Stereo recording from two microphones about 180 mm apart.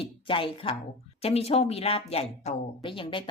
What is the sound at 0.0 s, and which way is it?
A woman's voice, 30° left (ahead or behind).